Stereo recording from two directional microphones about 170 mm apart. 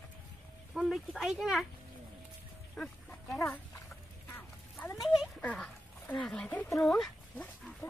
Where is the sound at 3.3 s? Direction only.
20° left (ahead or behind).